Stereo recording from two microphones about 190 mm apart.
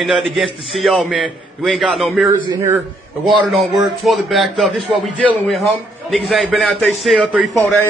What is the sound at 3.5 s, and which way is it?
A man's voice, centre (ahead or behind).